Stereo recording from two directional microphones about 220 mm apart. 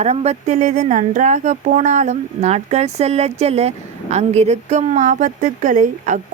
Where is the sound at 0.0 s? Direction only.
30° right (ahead or behind).